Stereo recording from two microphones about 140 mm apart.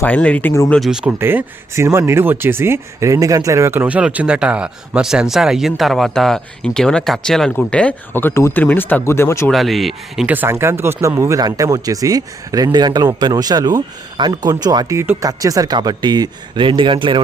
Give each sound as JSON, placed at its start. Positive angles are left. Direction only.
{"t": 0.0, "sound": "speech", "side_deg": 10}
{"t": 0.7, "sound": "speech", "side_deg": 0}
{"t": 1.2, "sound": "speech", "side_deg": -15}
{"t": 9.5, "sound": "speech", "side_deg": 0}
{"t": 10.2, "sound": "speech", "side_deg": -15}